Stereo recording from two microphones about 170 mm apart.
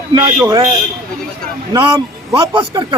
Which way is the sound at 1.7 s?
20° right (ahead or behind).